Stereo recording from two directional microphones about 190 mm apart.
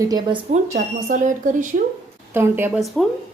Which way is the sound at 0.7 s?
45° right (ahead or behind).